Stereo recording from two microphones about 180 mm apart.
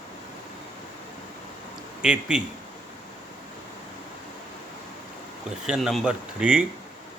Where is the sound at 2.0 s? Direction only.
5° right (ahead or behind).